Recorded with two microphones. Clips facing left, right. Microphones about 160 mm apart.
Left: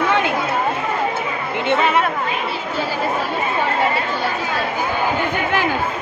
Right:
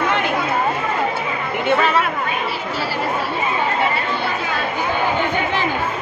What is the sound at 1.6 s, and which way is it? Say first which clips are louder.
Speech: right 1 dB; 25° left (ahead or behind).